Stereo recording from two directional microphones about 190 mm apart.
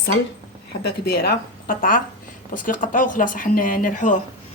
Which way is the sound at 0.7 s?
55° left (ahead or behind).